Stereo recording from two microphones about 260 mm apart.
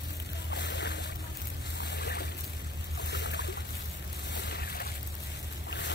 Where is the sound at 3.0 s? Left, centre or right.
Left.